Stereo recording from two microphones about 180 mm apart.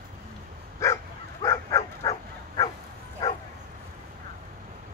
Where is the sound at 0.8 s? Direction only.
15° left (ahead or behind).